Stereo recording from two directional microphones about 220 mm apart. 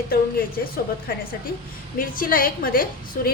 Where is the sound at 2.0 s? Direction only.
40° left (ahead or behind).